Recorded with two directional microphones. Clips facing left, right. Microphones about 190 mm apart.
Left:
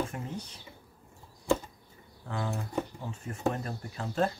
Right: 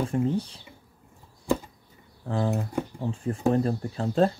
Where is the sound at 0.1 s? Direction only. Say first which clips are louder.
Right 13 dB; 30° right (ahead or behind).